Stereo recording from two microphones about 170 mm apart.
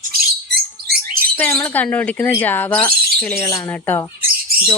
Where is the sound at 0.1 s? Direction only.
65° right (ahead or behind).